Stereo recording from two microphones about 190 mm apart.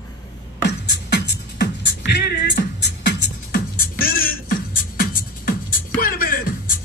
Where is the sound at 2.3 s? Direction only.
55° left (ahead or behind).